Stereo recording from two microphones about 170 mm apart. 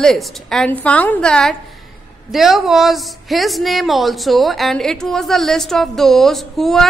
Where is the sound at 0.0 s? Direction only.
Centre (ahead or behind).